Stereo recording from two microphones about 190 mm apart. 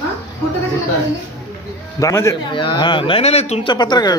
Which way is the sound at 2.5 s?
25° left (ahead or behind).